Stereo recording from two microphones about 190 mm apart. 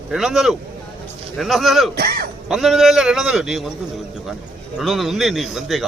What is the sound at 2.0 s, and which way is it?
Speech, 55° right (ahead or behind).